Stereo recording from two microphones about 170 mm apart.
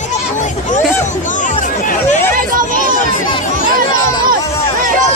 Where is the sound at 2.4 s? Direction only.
55° right (ahead or behind).